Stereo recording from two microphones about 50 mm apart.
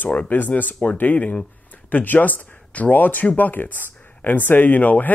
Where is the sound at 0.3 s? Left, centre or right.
Left.